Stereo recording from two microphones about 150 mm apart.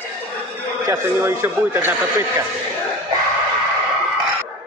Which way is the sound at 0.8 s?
15° right (ahead or behind).